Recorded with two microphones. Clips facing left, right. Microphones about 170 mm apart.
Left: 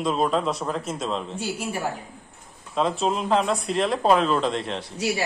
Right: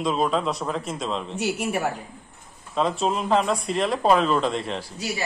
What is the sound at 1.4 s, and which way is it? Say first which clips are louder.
Speech: right 4 dB; 70° right (ahead or behind).